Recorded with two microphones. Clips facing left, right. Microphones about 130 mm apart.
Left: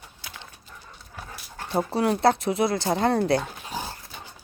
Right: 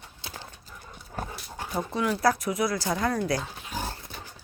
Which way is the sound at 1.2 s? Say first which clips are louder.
Right 6 dB; 45° right (ahead or behind).